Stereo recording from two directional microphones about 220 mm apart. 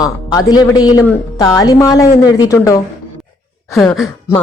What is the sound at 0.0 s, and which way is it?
A man's voice, 15° left (ahead or behind).